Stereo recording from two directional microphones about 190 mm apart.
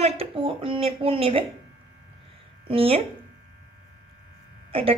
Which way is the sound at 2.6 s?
30° right (ahead or behind).